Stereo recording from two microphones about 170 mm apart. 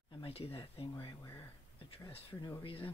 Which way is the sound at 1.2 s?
20° left (ahead or behind).